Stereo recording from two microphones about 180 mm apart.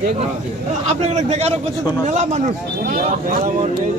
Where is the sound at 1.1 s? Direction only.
40° right (ahead or behind).